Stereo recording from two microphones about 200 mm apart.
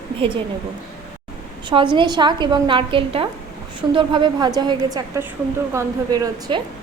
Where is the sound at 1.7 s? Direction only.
25° right (ahead or behind).